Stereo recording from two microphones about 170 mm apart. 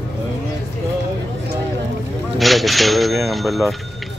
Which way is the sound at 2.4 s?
Centre (ahead or behind).